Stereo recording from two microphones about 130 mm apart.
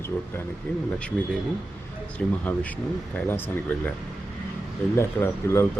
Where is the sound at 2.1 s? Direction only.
10° left (ahead or behind).